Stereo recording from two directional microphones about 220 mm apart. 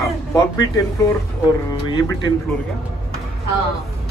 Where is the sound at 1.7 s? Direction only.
20° left (ahead or behind).